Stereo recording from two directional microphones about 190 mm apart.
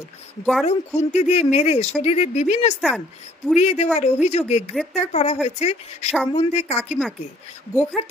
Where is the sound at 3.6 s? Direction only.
35° left (ahead or behind).